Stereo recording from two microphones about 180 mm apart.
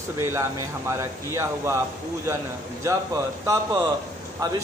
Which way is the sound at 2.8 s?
15° right (ahead or behind).